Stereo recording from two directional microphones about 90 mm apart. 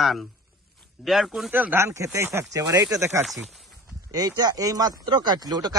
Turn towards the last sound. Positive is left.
turn(degrees=-50)  # may be behind; listen again after turning